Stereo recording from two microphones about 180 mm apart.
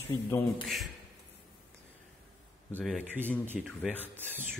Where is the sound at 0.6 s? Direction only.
Centre (ahead or behind).